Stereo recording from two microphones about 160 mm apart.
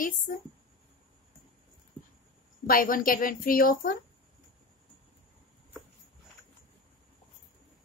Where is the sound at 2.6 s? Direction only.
65° left (ahead or behind).